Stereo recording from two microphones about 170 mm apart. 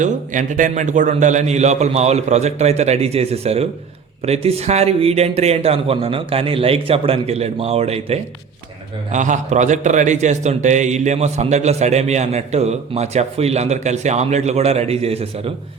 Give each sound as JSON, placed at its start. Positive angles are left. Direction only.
{"t": 0.0, "sound": "a man's voice", "side_deg": -50}